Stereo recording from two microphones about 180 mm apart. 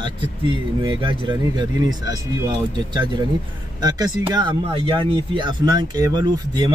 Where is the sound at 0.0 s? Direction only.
25° right (ahead or behind).